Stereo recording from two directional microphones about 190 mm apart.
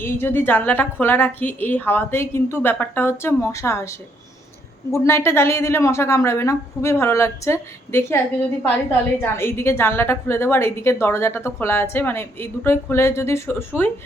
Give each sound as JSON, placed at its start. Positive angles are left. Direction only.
{"t": 0.0, "sound": "a woman's voice", "side_deg": 10}
{"t": 4.9, "sound": "a woman's voice", "side_deg": 15}